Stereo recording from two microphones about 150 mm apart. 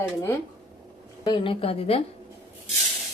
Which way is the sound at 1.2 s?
35° left (ahead or behind).